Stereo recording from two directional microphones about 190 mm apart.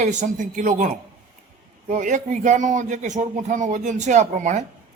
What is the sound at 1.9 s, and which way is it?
Speech, 40° right (ahead or behind).